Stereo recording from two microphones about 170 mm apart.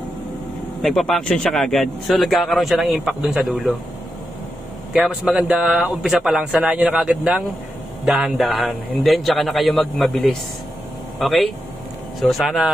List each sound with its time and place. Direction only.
0.8 s a man's voice: centre (ahead or behind)
4.9 s a man's voice: 5° right (ahead or behind)